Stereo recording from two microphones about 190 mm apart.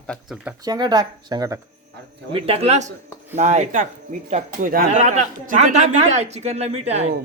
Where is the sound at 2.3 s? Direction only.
30° right (ahead or behind).